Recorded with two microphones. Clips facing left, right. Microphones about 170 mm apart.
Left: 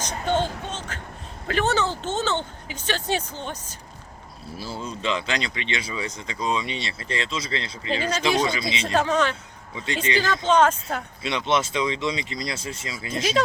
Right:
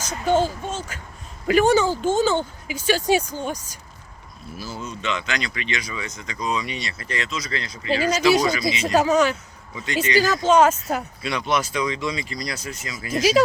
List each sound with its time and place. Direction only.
0.0 s speech: 10° right (ahead or behind)
4.5 s speech: 30° left (ahead or behind)
8.9 s speech: 10° right (ahead or behind)
9.7 s speech: 30° left (ahead or behind)
10.2 s speech: 10° right (ahead or behind)
11.2 s speech: 25° left (ahead or behind)